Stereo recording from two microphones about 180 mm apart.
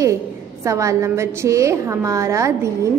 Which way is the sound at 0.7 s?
15° right (ahead or behind).